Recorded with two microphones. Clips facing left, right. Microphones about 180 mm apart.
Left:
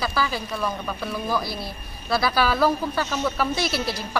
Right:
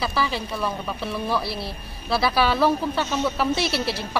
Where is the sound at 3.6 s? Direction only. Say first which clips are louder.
Right 1 dB; 30° right (ahead or behind).